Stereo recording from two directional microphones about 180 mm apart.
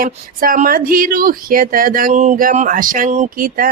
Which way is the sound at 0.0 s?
50° right (ahead or behind).